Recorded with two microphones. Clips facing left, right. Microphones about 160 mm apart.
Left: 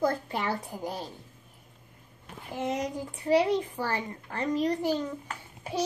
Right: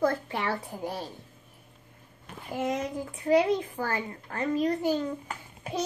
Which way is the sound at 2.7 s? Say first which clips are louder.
Even; 35° left (ahead or behind).